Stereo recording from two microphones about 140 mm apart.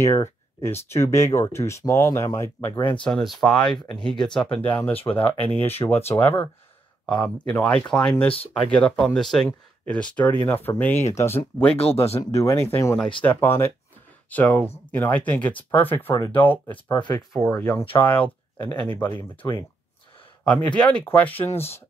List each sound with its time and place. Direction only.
0.0 s speech: 20° left (ahead or behind)
3.0 s speech: 5° left (ahead or behind)
11.7 s speech: 45° left (ahead or behind)
12.2 s speech: 20° left (ahead or behind)
16.9 s speech: 30° left (ahead or behind)
17.3 s speech: 5° left (ahead or behind)
19.1 s speech: 35° left (ahead or behind)
20.4 s speech: 10° left (ahead or behind)